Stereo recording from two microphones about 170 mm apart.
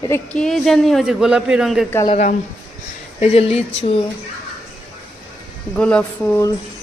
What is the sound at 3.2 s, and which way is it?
Speech, 35° left (ahead or behind).